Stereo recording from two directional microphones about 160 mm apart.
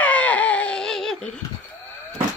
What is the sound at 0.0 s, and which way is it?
Baby cry, 10° left (ahead or behind).